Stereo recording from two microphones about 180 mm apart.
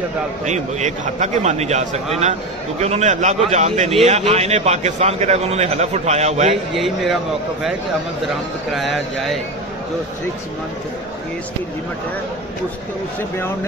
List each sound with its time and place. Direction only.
0.5 s a man's voice: 40° right (ahead or behind)
6.7 s speech: centre (ahead or behind)
8.7 s speech: centre (ahead or behind)